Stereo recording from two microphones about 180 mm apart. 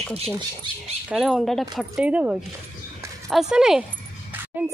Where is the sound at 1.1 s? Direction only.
Centre (ahead or behind).